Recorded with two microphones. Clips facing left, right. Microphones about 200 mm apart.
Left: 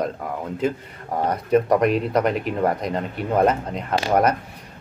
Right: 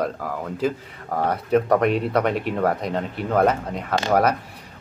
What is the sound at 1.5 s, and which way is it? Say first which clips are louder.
Speech: left 1 dB; centre (ahead or behind).